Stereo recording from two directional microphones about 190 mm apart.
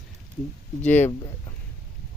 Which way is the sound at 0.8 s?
10° left (ahead or behind).